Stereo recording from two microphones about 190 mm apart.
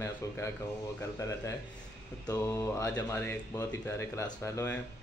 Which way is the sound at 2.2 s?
15° left (ahead or behind).